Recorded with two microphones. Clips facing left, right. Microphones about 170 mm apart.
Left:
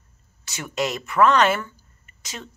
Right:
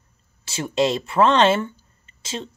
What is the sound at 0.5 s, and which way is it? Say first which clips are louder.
Speech: right 6 dB; 30° right (ahead or behind).